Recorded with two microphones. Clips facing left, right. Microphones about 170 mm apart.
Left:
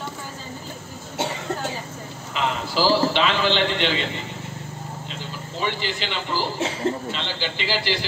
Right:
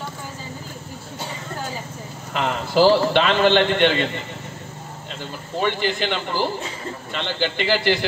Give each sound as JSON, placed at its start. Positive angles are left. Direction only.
{"t": 2.3, "sound": "a man's voice", "side_deg": -55}
{"t": 5.2, "sound": "a man's voice", "side_deg": -55}